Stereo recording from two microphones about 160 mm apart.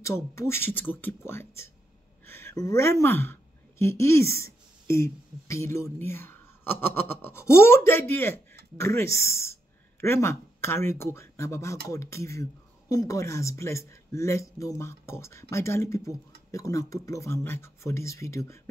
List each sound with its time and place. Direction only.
0.0 s speech: 20° left (ahead or behind)